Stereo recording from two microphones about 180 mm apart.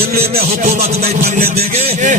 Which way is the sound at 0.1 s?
60° right (ahead or behind).